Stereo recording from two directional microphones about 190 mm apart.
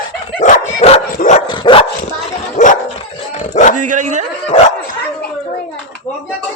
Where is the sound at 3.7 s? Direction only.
40° right (ahead or behind).